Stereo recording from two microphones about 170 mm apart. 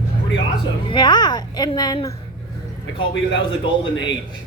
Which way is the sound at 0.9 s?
25° left (ahead or behind).